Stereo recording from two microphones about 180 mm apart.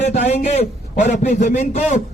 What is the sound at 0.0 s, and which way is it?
A man's voice, 40° left (ahead or behind).